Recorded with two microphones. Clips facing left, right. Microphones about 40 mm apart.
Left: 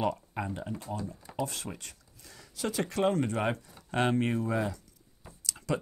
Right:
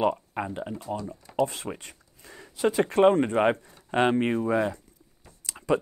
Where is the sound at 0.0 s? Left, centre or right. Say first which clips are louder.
Right 5 dB; right.